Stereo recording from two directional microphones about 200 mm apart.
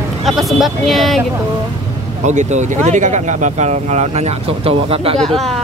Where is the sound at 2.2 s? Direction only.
35° right (ahead or behind).